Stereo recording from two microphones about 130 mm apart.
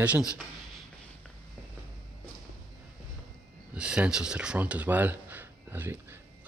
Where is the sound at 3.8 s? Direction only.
5° right (ahead or behind).